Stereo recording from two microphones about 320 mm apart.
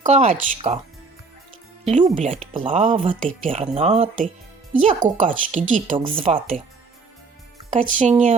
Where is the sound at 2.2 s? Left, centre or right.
Right.